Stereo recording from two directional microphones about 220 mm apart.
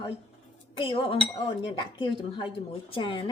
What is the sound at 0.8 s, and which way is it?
Speech, 25° left (ahead or behind).